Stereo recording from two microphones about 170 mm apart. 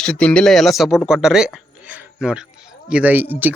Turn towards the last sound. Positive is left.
turn(degrees=-10)  # may be behind; listen again after turning